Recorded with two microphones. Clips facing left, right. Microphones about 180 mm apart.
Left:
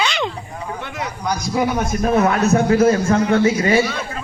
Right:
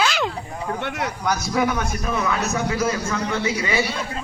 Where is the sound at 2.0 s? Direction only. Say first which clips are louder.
Left 11 dB; 55° left (ahead or behind).